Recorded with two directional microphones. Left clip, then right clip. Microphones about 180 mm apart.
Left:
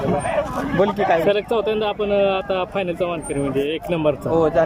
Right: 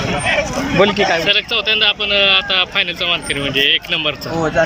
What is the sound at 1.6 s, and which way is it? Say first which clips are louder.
Speech: right 6 dB; 40° left (ahead or behind).